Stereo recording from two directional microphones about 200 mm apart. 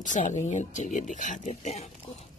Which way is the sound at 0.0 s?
35° left (ahead or behind).